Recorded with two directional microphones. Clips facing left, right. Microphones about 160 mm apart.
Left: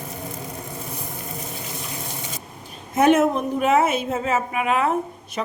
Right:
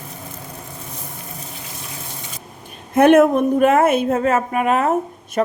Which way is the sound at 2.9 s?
60° right (ahead or behind).